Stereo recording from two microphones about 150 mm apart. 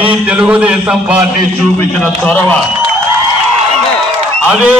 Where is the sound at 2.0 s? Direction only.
10° left (ahead or behind).